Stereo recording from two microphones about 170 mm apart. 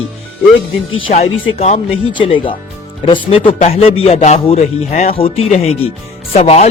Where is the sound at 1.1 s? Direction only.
40° left (ahead or behind).